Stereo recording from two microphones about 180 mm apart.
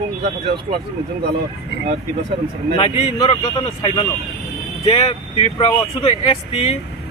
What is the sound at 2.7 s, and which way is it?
A man's voice, 30° left (ahead or behind).